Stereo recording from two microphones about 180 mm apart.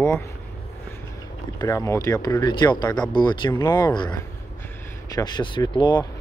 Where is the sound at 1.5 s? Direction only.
20° left (ahead or behind).